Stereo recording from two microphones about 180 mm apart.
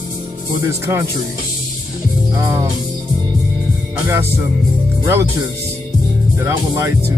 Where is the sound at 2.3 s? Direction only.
20° right (ahead or behind).